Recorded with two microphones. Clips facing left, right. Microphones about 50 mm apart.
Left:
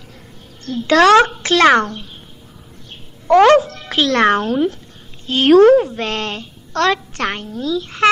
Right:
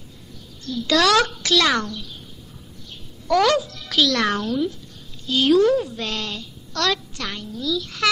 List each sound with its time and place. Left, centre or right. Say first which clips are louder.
0.7 s a woman's voice: left 7 dB; left
3.3 s a woman's voice: left 9 dB; left